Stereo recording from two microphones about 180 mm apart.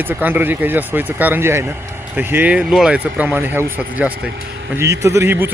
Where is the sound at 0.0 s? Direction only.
10° right (ahead or behind).